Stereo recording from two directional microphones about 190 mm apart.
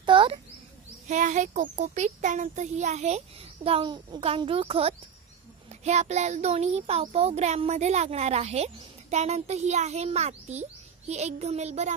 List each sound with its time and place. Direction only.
0.0 s bird: 25° right (ahead or behind)
1.0 s child singing: 40° right (ahead or behind)